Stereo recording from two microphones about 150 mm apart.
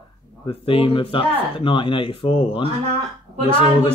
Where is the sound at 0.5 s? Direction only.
40° left (ahead or behind).